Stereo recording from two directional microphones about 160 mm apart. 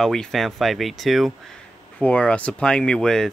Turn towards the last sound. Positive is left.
turn(degrees=5)  # may be behind; listen again after turning